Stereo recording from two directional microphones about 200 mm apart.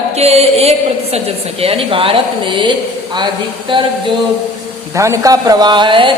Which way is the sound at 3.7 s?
25° right (ahead or behind).